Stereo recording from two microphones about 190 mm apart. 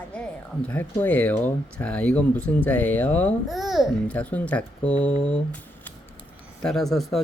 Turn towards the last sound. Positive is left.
turn(degrees=0)  # may be behind; listen again after turning